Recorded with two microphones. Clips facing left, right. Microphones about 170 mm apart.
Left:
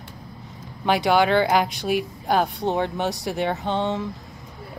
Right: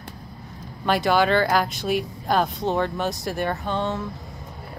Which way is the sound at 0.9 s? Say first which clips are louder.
Left 1 dB; 15° left (ahead or behind).